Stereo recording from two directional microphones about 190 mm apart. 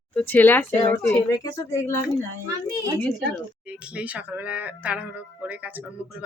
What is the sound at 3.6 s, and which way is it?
Speech, 5° right (ahead or behind).